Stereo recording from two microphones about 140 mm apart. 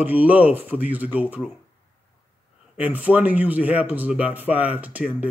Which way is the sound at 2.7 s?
10° right (ahead or behind).